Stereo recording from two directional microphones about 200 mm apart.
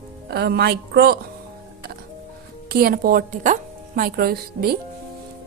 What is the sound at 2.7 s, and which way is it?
A woman's voice, 50° right (ahead or behind).